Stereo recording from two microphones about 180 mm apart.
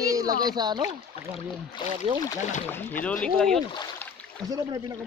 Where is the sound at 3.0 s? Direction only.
5° left (ahead or behind).